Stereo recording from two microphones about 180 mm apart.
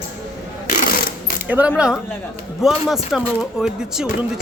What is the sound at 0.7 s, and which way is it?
Mechanisms, 50° left (ahead or behind).